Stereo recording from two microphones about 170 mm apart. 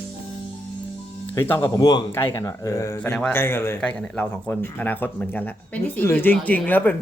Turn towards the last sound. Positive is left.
turn(degrees=10)  # may be behind; listen again after turning